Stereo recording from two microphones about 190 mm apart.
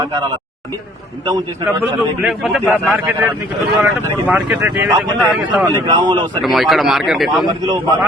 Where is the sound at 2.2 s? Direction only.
Centre (ahead or behind).